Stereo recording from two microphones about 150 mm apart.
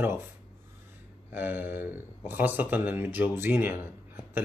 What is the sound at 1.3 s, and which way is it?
Speech, 15° right (ahead or behind).